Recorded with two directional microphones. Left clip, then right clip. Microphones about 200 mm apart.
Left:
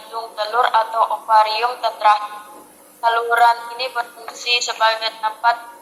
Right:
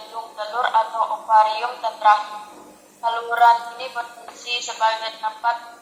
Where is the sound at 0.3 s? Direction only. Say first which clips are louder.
Left 3 dB; 30° left (ahead or behind).